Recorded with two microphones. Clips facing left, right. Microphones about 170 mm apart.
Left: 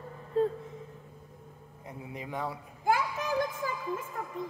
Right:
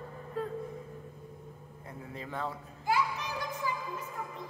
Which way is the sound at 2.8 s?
50° left (ahead or behind).